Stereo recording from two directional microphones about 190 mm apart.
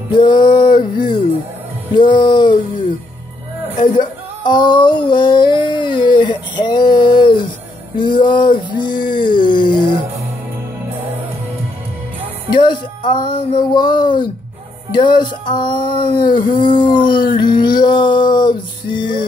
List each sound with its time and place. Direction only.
0.1 s speech: 25° left (ahead or behind)
3.9 s a sound: 25° left (ahead or behind)
7.9 s music: 25° left (ahead or behind)
8.7 s a sound: 25° left (ahead or behind)
12.4 s music: 25° left (ahead or behind)
14.9 s speech: 25° left (ahead or behind)